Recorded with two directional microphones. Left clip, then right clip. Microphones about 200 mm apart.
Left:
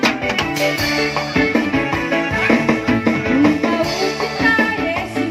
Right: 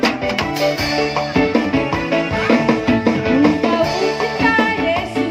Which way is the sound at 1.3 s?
Centre (ahead or behind).